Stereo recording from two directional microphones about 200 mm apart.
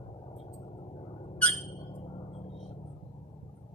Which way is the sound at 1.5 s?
30° left (ahead or behind).